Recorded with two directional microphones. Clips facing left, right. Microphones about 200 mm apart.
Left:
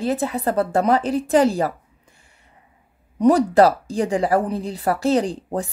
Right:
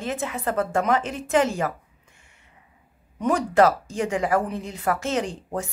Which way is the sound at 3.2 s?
35° left (ahead or behind).